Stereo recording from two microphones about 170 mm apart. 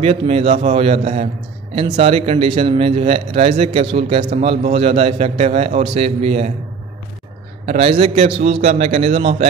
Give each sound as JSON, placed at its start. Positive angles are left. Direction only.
{"t": 0.0, "sound": "speech", "side_deg": -35}
{"t": 7.6, "sound": "speech", "side_deg": -35}